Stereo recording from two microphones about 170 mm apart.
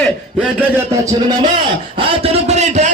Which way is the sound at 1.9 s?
35° right (ahead or behind).